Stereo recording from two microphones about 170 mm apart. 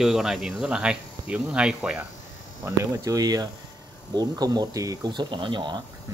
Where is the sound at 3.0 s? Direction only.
20° right (ahead or behind).